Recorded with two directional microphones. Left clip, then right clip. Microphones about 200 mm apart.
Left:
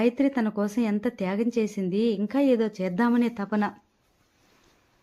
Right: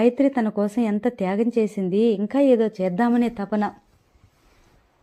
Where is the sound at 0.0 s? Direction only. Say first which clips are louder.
Right 5 dB; 5° right (ahead or behind).